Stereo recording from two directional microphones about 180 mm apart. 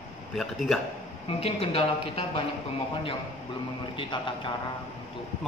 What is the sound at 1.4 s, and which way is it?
Speech, 30° left (ahead or behind).